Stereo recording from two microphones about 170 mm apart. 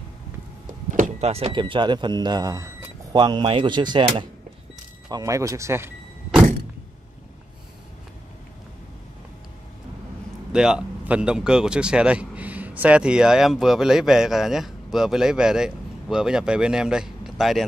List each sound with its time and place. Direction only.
0.7 s speech: 45° right (ahead or behind); by 4.3 s 25° right (ahead or behind)
5.1 s vehicle: 20° right (ahead or behind)
10.5 s speech: 5° right (ahead or behind)